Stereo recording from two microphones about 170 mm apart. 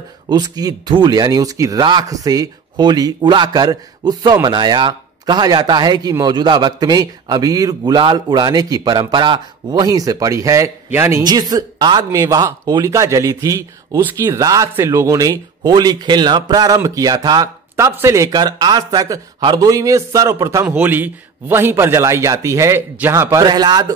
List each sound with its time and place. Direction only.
0.3 s a man's voice: 25° right (ahead or behind)